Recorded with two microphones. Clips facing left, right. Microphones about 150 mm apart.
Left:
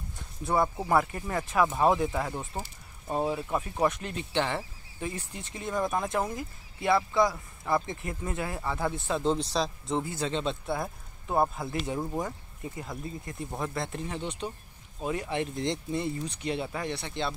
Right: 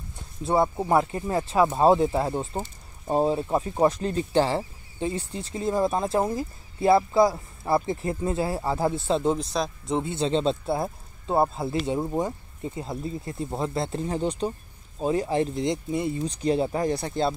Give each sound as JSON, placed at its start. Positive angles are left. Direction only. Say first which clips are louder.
{"t": 0.4, "sound": "speech", "louder": "right 4 dB", "side_deg": -25}
{"t": 9.5, "sound": "speech", "louder": "right 2 dB", "side_deg": -5}
{"t": 9.8, "sound": "speech", "louder": "right 5 dB", "side_deg": -20}
{"t": 15.5, "sound": "speech", "louder": "right 4 dB", "side_deg": -20}
{"t": 16.3, "sound": "speech", "louder": "right 8 dB", "side_deg": -35}